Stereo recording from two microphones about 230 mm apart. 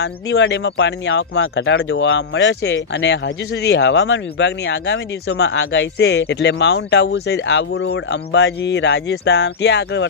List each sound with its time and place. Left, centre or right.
0.0 s speech: left